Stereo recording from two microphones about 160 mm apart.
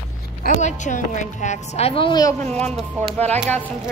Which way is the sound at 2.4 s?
5° left (ahead or behind).